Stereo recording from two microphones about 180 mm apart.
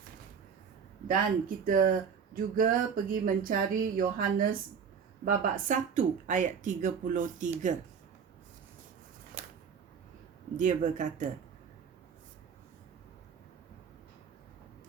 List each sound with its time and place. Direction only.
1.0 s speech: 50° right (ahead or behind)
10.6 s speech: 45° right (ahead or behind)